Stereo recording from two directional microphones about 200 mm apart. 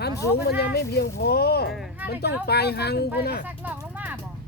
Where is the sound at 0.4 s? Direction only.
50° left (ahead or behind).